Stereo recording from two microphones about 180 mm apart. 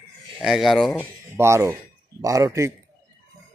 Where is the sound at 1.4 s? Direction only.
15° right (ahead or behind).